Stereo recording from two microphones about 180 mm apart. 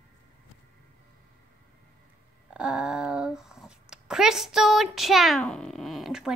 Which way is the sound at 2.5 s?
5° right (ahead or behind).